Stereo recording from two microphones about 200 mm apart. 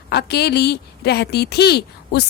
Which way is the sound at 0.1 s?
55° left (ahead or behind).